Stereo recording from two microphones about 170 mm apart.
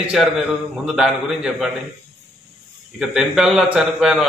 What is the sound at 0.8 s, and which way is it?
Speech, 5° right (ahead or behind).